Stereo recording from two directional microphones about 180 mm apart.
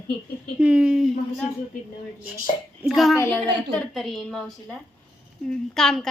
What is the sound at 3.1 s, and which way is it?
A woman's voice, 10° left (ahead or behind).